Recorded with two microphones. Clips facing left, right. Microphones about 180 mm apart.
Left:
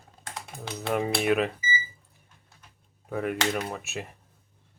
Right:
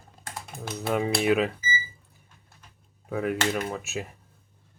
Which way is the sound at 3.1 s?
Centre (ahead or behind).